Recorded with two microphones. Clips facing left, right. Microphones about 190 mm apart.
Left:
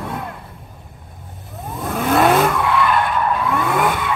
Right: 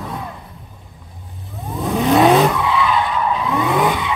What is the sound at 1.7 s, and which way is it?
Vehicle, centre (ahead or behind).